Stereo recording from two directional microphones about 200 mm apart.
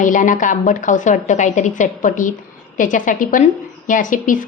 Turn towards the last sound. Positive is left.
turn(degrees=40)  # may be behind; listen again after turning